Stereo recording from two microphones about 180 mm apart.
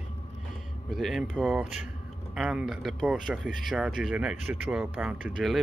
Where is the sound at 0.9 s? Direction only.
Centre (ahead or behind).